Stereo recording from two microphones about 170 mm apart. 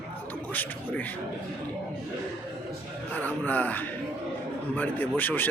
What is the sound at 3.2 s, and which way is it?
Speech, 10° left (ahead or behind).